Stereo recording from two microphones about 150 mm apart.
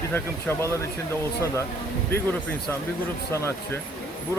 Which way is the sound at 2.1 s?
15° left (ahead or behind).